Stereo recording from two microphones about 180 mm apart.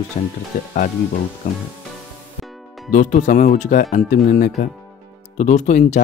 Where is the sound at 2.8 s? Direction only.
45° left (ahead or behind).